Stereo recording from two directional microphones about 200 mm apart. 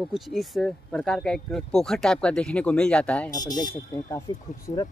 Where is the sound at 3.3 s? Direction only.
40° left (ahead or behind).